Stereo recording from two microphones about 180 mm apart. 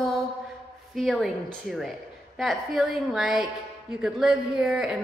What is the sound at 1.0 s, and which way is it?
Speech, centre (ahead or behind).